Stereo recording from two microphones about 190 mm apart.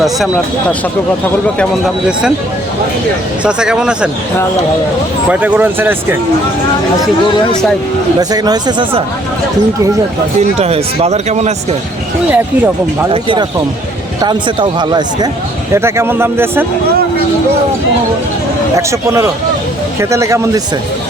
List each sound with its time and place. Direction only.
3.4 s speech: 5° right (ahead or behind)
5.3 s speech: 10° right (ahead or behind)
8.2 s speech: 20° right (ahead or behind)
10.6 s speech: 35° right (ahead or behind)
12.3 s speech: 10° right (ahead or behind)
13.1 s speech: 25° right (ahead or behind)
18.8 s speech: 15° right (ahead or behind)